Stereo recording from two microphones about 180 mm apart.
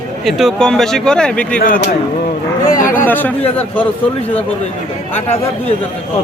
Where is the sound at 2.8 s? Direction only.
45° left (ahead or behind).